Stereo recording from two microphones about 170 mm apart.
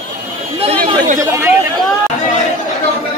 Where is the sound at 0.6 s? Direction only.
35° right (ahead or behind).